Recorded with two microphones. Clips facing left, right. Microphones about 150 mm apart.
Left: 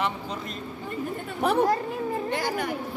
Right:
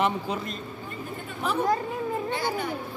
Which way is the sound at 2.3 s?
90° left.